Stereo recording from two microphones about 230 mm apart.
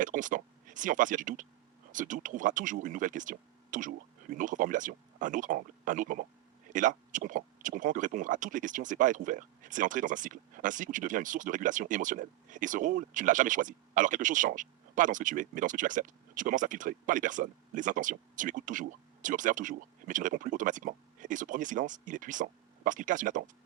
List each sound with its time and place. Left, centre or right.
0.0 s speech: right